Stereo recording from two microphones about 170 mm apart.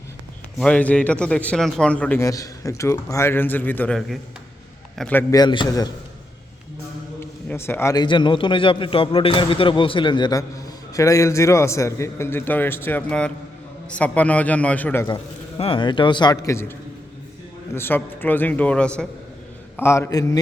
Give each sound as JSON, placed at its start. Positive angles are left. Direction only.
{"t": 0.6, "sound": "a man's voice", "side_deg": 5}
{"t": 5.3, "sound": "a man's voice", "side_deg": 25}
{"t": 7.5, "sound": "a man's voice", "side_deg": 15}
{"t": 8.0, "sound": "a man's voice", "side_deg": 30}
{"t": 15.0, "sound": "a man's voice", "side_deg": 30}
{"t": 17.7, "sound": "a man's voice", "side_deg": 10}